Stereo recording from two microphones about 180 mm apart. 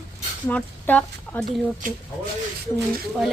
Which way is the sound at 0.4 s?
10° left (ahead or behind).